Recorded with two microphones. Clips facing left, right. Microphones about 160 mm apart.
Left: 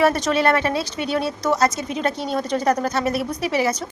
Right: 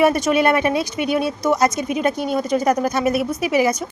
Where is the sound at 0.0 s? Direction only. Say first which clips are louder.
Right 2 dB; 10° right (ahead or behind).